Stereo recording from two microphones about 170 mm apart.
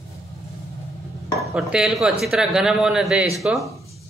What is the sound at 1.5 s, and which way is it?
Speech, 5° right (ahead or behind).